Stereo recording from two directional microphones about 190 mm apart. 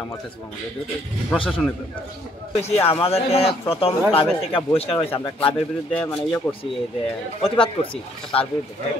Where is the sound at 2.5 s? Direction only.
35° left (ahead or behind).